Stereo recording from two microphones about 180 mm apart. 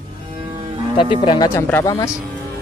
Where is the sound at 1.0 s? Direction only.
25° left (ahead or behind).